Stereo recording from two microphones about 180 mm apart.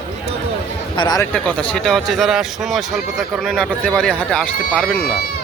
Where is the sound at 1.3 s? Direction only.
5° left (ahead or behind).